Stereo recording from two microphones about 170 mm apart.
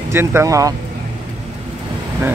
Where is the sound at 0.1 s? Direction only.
15° right (ahead or behind).